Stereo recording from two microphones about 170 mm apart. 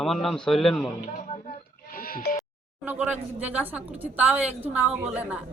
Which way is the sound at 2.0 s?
60° left (ahead or behind).